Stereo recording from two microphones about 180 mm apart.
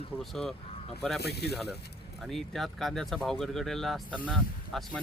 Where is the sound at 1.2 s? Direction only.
65° left (ahead or behind).